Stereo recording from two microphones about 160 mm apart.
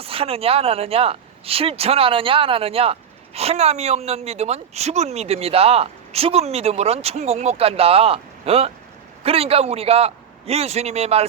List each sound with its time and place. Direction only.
0.0 s speech: 35° right (ahead or behind)